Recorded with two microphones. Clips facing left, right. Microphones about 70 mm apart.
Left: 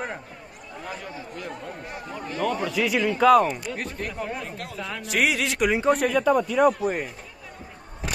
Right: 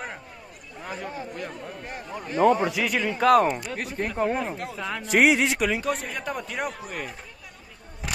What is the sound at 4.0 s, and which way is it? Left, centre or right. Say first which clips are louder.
Speech: right 6 dB; right.